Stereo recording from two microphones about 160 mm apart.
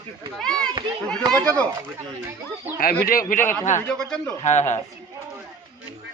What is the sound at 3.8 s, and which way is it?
Speech, 5° left (ahead or behind).